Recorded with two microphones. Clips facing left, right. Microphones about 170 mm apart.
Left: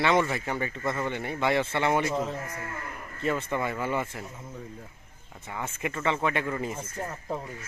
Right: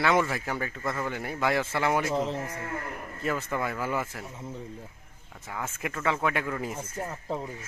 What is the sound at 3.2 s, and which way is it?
Speech, centre (ahead or behind).